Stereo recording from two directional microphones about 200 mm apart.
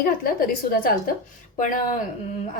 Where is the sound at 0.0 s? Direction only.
45° left (ahead or behind).